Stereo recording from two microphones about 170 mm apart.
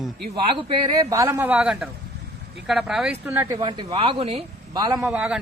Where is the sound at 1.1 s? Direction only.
20° right (ahead or behind).